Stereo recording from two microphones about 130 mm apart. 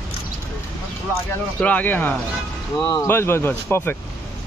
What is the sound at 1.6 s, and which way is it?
Speech, 10° left (ahead or behind).